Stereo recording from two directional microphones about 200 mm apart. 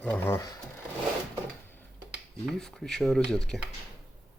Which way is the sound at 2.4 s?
5° left (ahead or behind).